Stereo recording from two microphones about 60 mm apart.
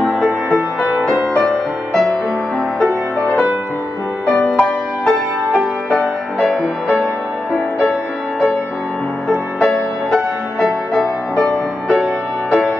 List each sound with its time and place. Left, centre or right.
4.5 s music: centre
6.5 s music: centre
11.0 s music: centre